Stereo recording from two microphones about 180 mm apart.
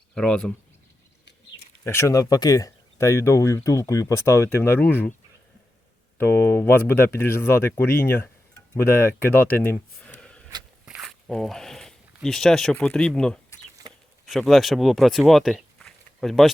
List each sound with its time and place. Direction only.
0.1 s speech: 5° left (ahead or behind)
1.8 s speech: 15° left (ahead or behind)
6.1 s speech: 15° left (ahead or behind)